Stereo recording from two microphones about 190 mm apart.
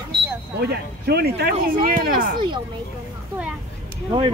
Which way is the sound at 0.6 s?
55° right (ahead or behind).